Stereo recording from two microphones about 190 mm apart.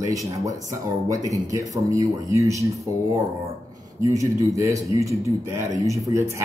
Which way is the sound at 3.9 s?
15° right (ahead or behind).